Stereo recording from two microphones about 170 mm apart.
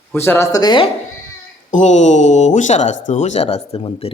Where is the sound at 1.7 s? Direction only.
45° left (ahead or behind).